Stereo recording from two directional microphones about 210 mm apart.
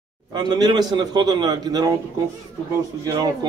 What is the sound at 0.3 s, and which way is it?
Speech, 20° right (ahead or behind).